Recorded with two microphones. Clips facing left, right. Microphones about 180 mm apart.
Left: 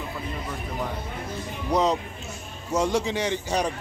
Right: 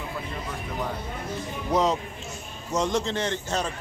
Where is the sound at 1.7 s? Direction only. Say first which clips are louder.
Left 1 dB; centre (ahead or behind).